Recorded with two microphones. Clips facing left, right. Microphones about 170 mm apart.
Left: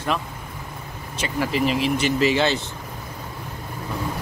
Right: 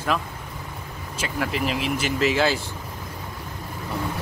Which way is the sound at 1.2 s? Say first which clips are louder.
Left 3 dB; centre (ahead or behind).